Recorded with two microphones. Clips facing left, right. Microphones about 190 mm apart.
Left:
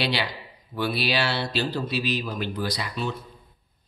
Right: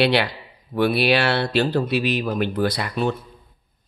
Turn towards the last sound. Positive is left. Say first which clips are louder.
# right 6 dB
turn(degrees=-55)  # may be behind; listen again after turning